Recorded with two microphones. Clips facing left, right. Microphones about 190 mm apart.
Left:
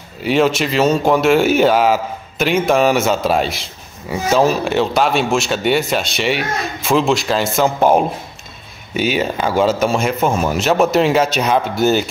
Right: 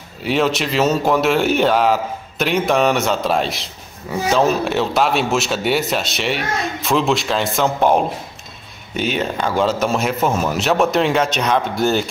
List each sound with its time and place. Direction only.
0.2 s speech: centre (ahead or behind)